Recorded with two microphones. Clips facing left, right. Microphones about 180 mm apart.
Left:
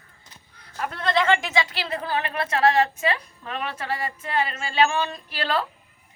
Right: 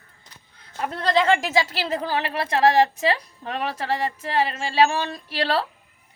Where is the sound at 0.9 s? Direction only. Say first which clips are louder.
Right 2 dB; 35° right (ahead or behind).